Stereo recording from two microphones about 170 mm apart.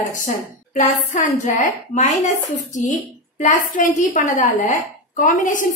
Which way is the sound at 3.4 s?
50° left (ahead or behind).